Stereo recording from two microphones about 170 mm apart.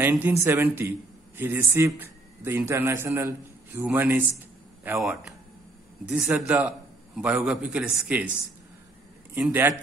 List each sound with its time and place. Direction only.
0.0 s a man's voice: 10° right (ahead or behind)
9.4 s a man's voice: 10° right (ahead or behind)